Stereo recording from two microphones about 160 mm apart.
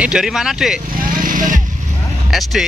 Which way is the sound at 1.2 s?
55° right (ahead or behind).